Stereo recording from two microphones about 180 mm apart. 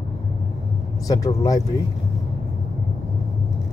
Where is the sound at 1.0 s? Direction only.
20° left (ahead or behind).